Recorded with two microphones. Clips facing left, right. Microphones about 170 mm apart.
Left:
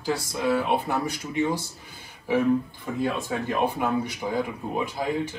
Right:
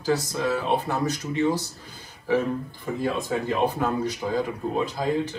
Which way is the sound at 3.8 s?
15° left (ahead or behind).